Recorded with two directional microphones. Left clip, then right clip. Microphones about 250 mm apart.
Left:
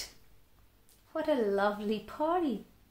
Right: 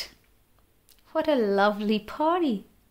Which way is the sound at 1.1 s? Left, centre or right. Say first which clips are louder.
Right 6 dB; right.